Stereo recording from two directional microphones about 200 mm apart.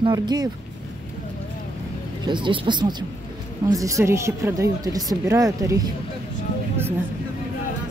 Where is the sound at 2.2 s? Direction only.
25° right (ahead or behind).